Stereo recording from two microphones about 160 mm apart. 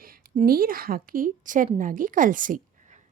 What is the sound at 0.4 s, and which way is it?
A woman's voice, 65° right (ahead or behind).